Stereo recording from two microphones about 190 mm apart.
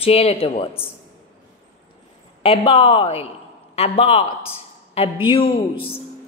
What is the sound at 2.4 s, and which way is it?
A man's voice, 30° left (ahead or behind).